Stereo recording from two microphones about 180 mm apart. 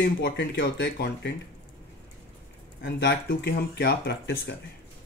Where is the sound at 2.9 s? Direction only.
75° left (ahead or behind).